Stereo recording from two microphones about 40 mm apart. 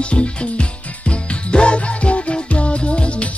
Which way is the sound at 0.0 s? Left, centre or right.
Left.